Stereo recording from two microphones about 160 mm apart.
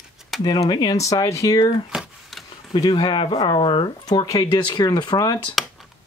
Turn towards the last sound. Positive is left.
turn(degrees=25)  # may be behind; listen again after turning